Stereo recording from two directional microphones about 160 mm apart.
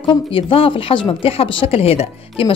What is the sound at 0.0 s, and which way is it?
A woman's voice, 30° left (ahead or behind).